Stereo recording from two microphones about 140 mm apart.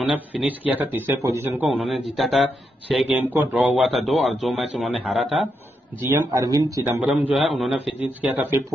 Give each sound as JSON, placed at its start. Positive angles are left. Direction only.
{"t": 0.0, "sound": "speech", "side_deg": -5}
{"t": 1.8, "sound": "speech", "side_deg": 0}
{"t": 3.2, "sound": "speech", "side_deg": -10}
{"t": 5.9, "sound": "speech", "side_deg": -20}
{"t": 7.0, "sound": "speech", "side_deg": -10}
{"t": 8.2, "sound": "speech", "side_deg": -10}